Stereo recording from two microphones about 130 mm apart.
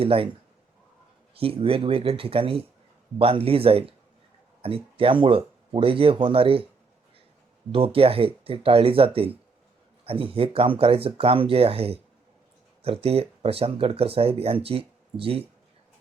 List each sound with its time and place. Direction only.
0.0 s speech: 45° right (ahead or behind)
1.4 s speech: 45° right (ahead or behind)
7.7 s speech: 45° right (ahead or behind)